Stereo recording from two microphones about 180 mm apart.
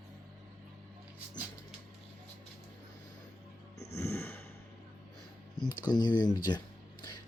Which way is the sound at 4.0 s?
15° left (ahead or behind).